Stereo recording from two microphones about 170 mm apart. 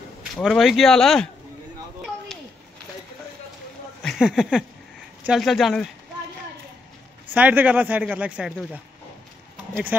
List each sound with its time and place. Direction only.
0.4 s speech: centre (ahead or behind)
4.0 s speech: centre (ahead or behind)
7.3 s a man's voice: 10° right (ahead or behind)